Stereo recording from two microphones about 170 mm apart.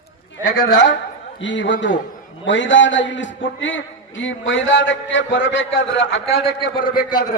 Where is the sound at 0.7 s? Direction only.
90° left.